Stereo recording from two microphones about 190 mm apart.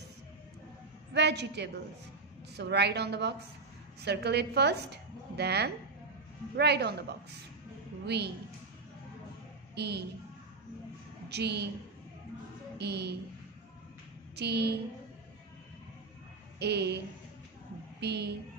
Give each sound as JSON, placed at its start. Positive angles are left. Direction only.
{"t": 1.1, "sound": "a woman's voice", "side_deg": -65}
{"t": 8.1, "sound": "a woman's voice", "side_deg": -60}
{"t": 9.8, "sound": "a woman's voice", "side_deg": -60}
{"t": 11.2, "sound": "a woman's voice", "side_deg": -60}
{"t": 12.7, "sound": "a woman's voice", "side_deg": -60}
{"t": 14.3, "sound": "a woman's voice", "side_deg": -60}
{"t": 16.5, "sound": "a woman's voice", "side_deg": -60}
{"t": 18.0, "sound": "a woman's voice", "side_deg": -60}